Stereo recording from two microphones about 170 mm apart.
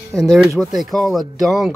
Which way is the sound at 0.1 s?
15° right (ahead or behind).